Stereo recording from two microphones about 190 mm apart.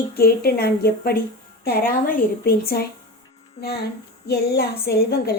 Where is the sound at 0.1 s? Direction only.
55° left (ahead or behind).